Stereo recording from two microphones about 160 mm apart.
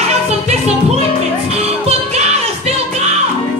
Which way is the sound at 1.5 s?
40° right (ahead or behind).